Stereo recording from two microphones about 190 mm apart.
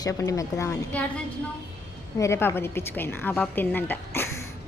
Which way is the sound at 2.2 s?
15° left (ahead or behind).